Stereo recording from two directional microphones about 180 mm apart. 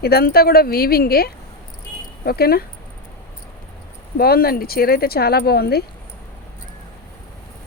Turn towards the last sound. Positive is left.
turn(degrees=60)  # may be behind; listen again after turning